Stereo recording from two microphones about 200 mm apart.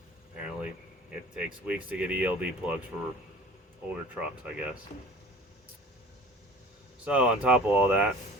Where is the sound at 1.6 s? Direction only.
5° right (ahead or behind).